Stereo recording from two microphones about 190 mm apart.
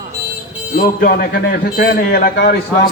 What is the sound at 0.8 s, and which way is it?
A man's voice, 50° left (ahead or behind).